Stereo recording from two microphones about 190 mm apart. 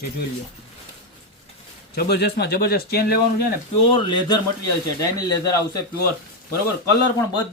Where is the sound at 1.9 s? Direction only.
55° left (ahead or behind).